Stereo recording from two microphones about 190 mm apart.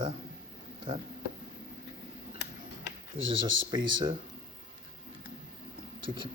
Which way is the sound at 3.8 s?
25° right (ahead or behind).